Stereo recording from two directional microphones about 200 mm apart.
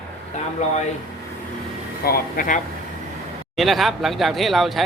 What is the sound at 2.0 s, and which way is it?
Speech, 45° left (ahead or behind).